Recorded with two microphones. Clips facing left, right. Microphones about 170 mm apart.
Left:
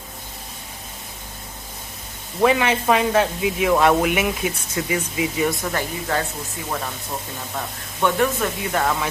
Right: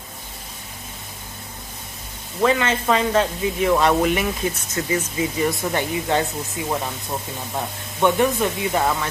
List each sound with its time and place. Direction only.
2.4 s speech: 15° left (ahead or behind)
5.7 s speech: 20° right (ahead or behind)
7.5 s speech: 15° right (ahead or behind)